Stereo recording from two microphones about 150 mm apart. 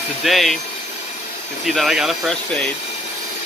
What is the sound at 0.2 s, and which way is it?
Speech, centre (ahead or behind).